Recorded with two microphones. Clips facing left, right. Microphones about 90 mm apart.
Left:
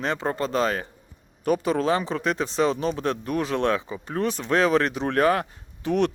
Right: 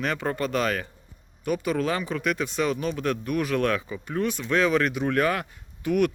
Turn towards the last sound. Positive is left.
turn(degrees=30)  # may be behind; listen again after turning